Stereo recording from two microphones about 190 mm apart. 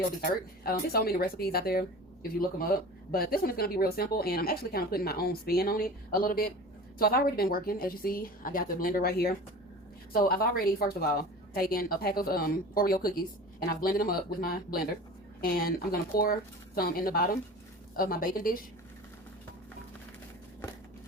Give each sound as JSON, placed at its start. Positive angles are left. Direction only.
{"t": 0.6, "sound": "speech", "side_deg": 55}